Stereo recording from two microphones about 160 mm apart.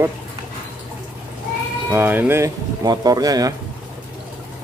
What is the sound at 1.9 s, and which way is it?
Speech, 15° right (ahead or behind).